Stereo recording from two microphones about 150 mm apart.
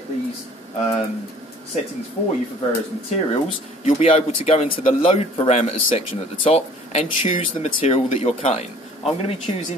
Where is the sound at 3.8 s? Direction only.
45° left (ahead or behind).